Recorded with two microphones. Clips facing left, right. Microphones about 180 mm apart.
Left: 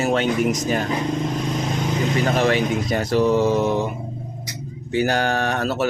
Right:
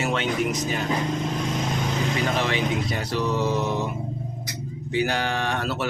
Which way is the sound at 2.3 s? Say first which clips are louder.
Left 5 dB; 45° left (ahead or behind).